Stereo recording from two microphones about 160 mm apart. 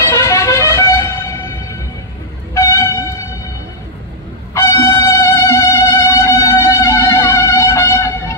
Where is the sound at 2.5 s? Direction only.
20° left (ahead or behind).